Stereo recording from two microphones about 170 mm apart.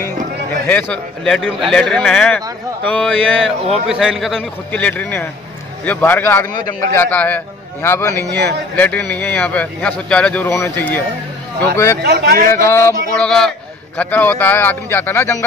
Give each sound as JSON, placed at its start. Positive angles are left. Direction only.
{"t": 0.7, "sound": "a man's voice", "side_deg": 5}
{"t": 12.0, "sound": "speech", "side_deg": -75}
{"t": 12.6, "sound": "a man's voice", "side_deg": 15}